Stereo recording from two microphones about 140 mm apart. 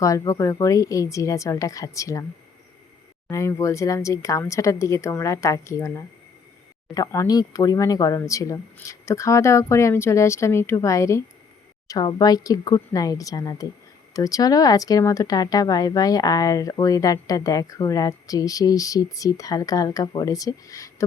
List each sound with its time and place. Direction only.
0.0 s speech: 25° left (ahead or behind)
3.2 s speech: 20° left (ahead or behind)